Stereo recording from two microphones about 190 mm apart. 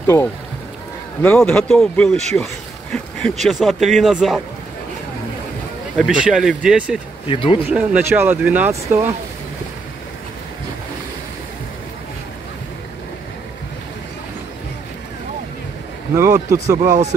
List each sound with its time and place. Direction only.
0.0 s speech: 15° left (ahead or behind)
2.3 s a sound: centre (ahead or behind)
3.4 s speech: centre (ahead or behind)
5.9 s speech: centre (ahead or behind)
7.2 s speech: 25° left (ahead or behind)
7.7 s speech: 10° right (ahead or behind)
16.2 s speech: 15° right (ahead or behind)